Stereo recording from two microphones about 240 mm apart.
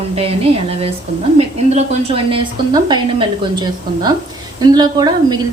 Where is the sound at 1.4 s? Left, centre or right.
Right.